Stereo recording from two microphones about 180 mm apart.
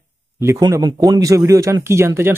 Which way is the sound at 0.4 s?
20° right (ahead or behind).